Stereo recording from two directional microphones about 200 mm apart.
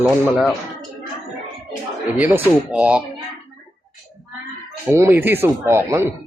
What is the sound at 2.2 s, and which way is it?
Speech, 10° right (ahead or behind).